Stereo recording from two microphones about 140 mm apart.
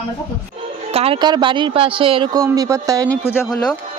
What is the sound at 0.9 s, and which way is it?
Speech, 45° right (ahead or behind).